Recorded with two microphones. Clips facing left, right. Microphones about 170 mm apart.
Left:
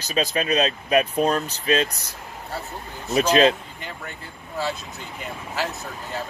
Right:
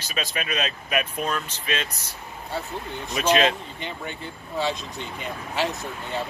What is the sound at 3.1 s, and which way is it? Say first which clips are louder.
Speech: left 4 dB; 35° left (ahead or behind).